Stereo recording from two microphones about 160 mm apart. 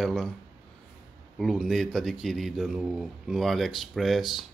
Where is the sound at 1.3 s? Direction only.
Centre (ahead or behind).